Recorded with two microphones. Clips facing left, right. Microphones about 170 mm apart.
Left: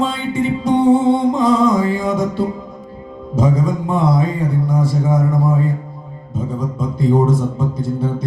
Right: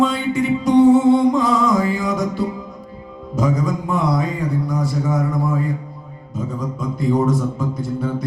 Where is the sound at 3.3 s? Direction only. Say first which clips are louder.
Left 3 dB; 25° left (ahead or behind).